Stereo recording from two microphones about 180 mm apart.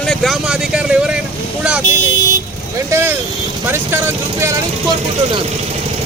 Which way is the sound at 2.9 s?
15° right (ahead or behind).